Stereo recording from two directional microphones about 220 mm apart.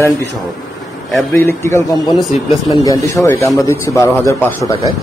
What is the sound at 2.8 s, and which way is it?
A man's voice, 15° left (ahead or behind).